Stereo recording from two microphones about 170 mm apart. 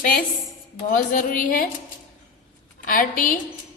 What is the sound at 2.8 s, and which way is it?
Speech, 55° left (ahead or behind).